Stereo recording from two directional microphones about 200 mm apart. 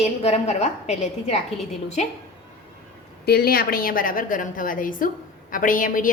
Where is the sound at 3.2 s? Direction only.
50° left (ahead or behind).